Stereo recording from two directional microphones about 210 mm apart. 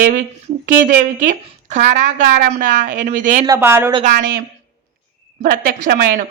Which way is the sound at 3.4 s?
15° right (ahead or behind).